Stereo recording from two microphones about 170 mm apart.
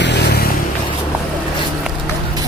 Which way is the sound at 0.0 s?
85° left.